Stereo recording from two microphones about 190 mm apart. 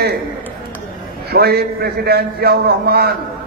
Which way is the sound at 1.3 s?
55° right (ahead or behind).